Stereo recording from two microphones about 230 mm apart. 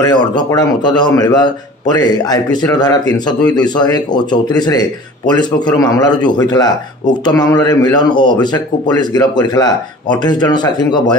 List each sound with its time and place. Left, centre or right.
0.0 s a man's voice: centre
7.2 s a man's voice: centre